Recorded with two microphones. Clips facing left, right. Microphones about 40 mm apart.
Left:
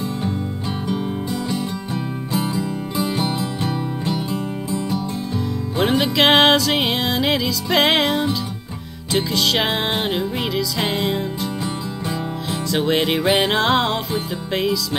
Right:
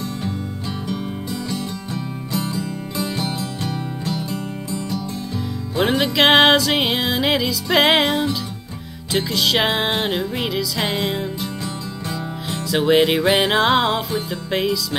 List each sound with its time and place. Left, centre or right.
0.8 s music: centre
5.8 s music: centre
12.4 s music: centre